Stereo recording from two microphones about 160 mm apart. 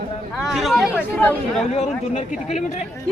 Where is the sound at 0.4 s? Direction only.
Centre (ahead or behind).